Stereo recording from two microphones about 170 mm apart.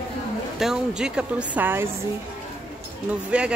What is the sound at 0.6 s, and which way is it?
A woman's voice, 5° right (ahead or behind).